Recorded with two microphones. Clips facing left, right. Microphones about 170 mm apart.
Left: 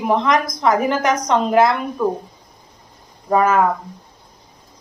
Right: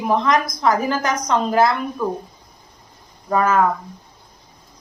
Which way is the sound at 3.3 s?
15° left (ahead or behind).